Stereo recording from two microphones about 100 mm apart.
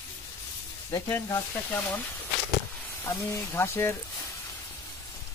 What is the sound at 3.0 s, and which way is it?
Speech, 30° left (ahead or behind).